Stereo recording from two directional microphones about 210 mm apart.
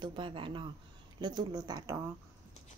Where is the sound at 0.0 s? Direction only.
25° right (ahead or behind).